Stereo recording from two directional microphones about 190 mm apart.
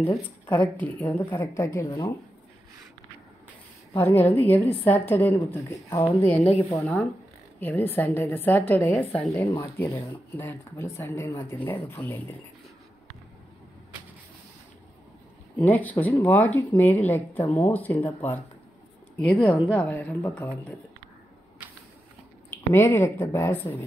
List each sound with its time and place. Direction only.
0.0 s speech: 10° left (ahead or behind)
3.9 s speech: 10° left (ahead or behind)
6.3 s a woman's voice: 35° left (ahead or behind)
6.7 s speech: 5° left (ahead or behind)
15.5 s speech: 10° left (ahead or behind)
21.6 s shuffling cards: 10° right (ahead or behind)
22.5 s speech: 15° left (ahead or behind)